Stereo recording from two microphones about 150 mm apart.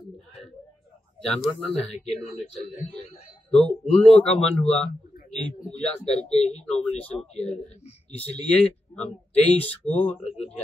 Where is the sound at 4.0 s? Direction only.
10° left (ahead or behind).